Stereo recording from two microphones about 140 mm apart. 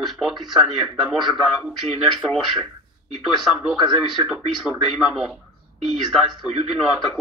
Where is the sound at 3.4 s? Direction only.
5° right (ahead or behind).